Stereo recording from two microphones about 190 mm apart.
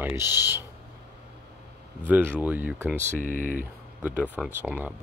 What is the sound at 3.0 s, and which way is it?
Speech, 45° right (ahead or behind).